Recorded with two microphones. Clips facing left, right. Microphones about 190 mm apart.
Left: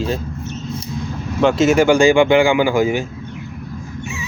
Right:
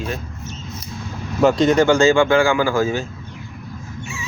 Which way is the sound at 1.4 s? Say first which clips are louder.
Left 1 dB; centre (ahead or behind).